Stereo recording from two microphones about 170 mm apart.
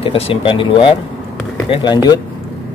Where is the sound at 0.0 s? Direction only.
30° left (ahead or behind).